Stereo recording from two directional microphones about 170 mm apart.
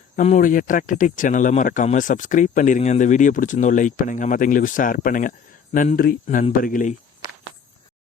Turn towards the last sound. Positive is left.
turn(degrees=50)  # may be behind; listen again after turning